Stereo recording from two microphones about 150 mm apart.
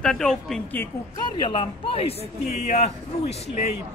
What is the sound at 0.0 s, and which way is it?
Speech, 5° left (ahead or behind).